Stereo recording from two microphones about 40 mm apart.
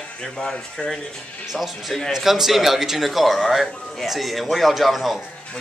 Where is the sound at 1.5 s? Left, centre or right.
Centre.